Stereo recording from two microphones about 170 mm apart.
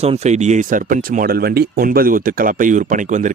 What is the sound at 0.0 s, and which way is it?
Speech, 40° right (ahead or behind).